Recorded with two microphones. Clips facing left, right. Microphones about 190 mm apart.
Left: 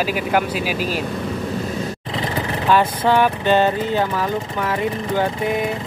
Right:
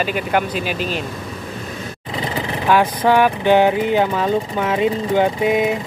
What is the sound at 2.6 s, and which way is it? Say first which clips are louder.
Speech: right 2 dB; 10° right (ahead or behind).